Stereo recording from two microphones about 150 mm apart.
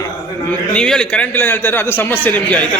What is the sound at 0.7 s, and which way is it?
A man's voice, 5° left (ahead or behind).